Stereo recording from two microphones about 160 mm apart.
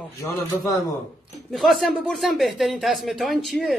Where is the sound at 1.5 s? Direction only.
Centre (ahead or behind).